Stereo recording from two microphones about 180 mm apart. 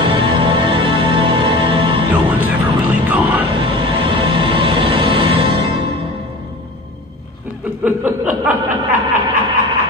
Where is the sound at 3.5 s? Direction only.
30° right (ahead or behind).